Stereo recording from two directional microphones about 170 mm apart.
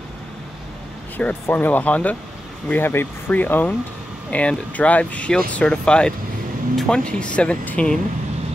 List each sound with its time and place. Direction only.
1.1 s speech: 10° left (ahead or behind)